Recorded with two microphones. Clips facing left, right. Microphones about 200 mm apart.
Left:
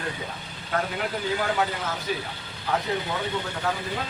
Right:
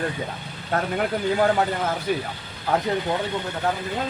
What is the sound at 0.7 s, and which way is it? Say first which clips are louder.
Speech: right 4 dB; 50° right (ahead or behind).